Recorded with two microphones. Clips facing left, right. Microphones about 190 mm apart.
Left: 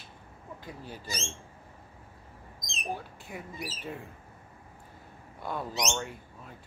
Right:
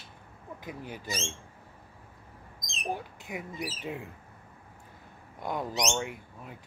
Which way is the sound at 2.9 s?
15° right (ahead or behind).